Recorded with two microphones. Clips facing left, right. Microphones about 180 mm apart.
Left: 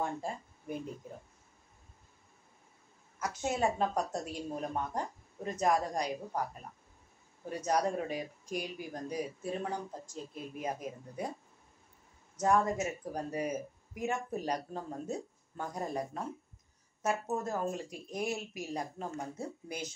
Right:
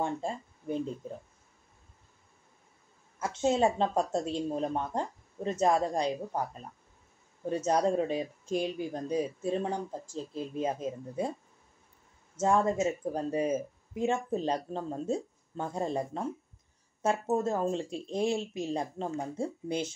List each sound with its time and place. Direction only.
0.0 s speech: 25° right (ahead or behind)
3.2 s speech: 25° right (ahead or behind)
7.4 s speech: 25° right (ahead or behind)
12.4 s speech: 25° right (ahead or behind)